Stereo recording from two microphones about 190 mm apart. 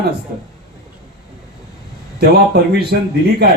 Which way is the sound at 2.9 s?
55° right (ahead or behind).